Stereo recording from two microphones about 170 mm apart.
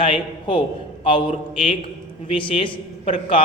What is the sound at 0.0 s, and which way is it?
A man's voice, 30° left (ahead or behind).